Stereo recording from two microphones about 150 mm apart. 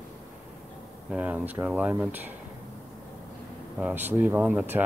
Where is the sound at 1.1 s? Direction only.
10° right (ahead or behind).